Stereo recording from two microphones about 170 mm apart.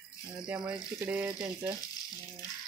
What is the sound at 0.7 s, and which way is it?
Speech, 10° right (ahead or behind).